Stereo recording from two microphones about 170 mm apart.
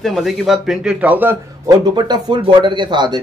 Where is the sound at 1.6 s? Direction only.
25° right (ahead or behind).